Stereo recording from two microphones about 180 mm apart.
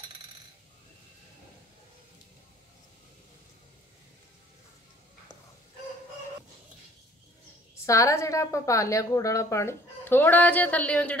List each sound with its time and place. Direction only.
7.8 s a woman's voice: 15° left (ahead or behind)